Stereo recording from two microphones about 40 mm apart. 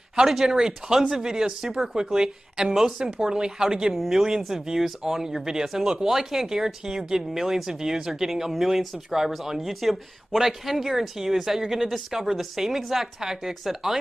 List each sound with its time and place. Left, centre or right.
0.3 s speech: centre
3.9 s speech: centre